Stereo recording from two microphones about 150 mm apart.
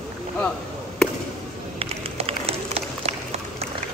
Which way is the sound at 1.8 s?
40° right (ahead or behind).